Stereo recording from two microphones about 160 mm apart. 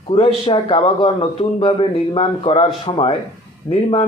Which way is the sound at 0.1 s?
35° left (ahead or behind).